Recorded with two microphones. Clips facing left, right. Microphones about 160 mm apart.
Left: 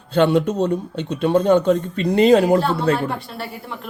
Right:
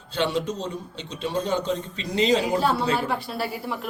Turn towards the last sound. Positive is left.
turn(degrees=-5)  # may be behind; listen again after turning